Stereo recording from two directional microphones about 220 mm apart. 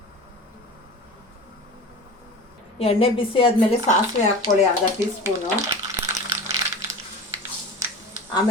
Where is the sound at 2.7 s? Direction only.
25° left (ahead or behind).